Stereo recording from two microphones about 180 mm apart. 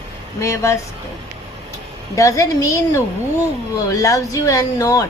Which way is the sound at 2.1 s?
15° left (ahead or behind).